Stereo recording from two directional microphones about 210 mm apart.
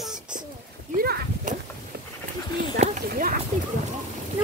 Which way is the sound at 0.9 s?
45° right (ahead or behind).